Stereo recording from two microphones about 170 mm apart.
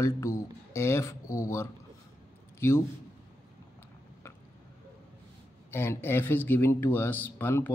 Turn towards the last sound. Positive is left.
turn(degrees=10)  # may be behind; listen again after turning